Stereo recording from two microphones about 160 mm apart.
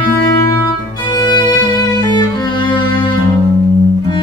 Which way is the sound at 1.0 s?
25° left (ahead or behind).